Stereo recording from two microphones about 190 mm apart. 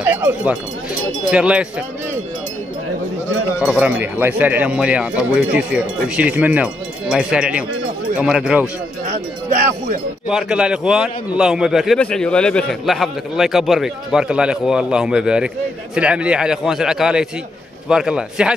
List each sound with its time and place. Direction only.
0.0 s a man's voice: 10° right (ahead or behind)
3.5 s a man's voice: 10° right (ahead or behind)
9.6 s speech: 40° right (ahead or behind)
10.2 s a man's voice: 5° right (ahead or behind)